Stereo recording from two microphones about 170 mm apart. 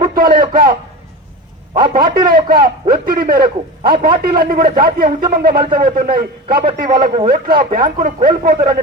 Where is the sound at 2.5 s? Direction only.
60° right (ahead or behind).